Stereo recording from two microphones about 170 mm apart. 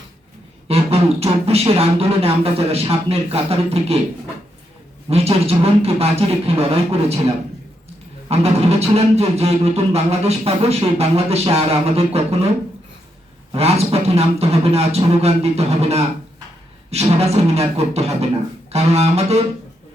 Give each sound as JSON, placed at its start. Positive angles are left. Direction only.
{"t": 0.7, "sound": "speech", "side_deg": -35}
{"t": 5.0, "sound": "speech", "side_deg": -35}
{"t": 8.3, "sound": "speech", "side_deg": -35}
{"t": 13.5, "sound": "speech", "side_deg": -35}